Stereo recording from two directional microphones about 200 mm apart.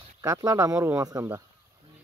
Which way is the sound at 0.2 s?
15° right (ahead or behind).